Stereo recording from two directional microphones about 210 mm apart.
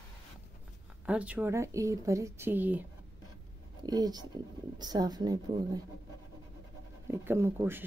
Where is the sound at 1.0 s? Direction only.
5° right (ahead or behind).